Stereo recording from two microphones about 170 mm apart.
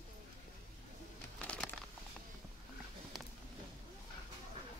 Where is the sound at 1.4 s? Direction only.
5° left (ahead or behind).